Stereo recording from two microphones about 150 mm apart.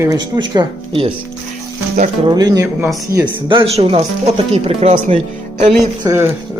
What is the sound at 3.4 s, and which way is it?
Speech, 40° right (ahead or behind).